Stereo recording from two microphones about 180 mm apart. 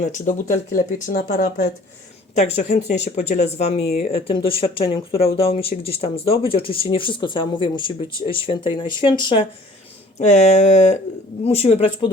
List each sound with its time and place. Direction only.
0.0 s speech: 40° left (ahead or behind)
2.3 s speech: 40° left (ahead or behind)
10.2 s speech: 40° left (ahead or behind)